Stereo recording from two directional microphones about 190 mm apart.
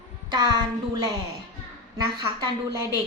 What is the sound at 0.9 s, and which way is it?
A woman's voice, 20° right (ahead or behind).